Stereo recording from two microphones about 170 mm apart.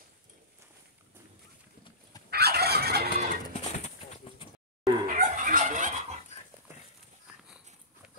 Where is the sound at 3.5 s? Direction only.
45° left (ahead or behind).